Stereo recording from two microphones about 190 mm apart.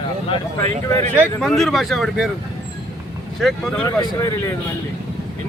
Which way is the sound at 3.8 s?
20° left (ahead or behind).